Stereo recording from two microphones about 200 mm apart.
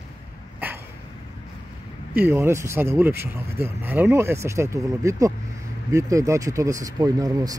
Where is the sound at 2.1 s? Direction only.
10° right (ahead or behind).